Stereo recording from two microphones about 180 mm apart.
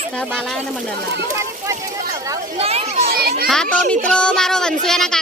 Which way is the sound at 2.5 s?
35° right (ahead or behind).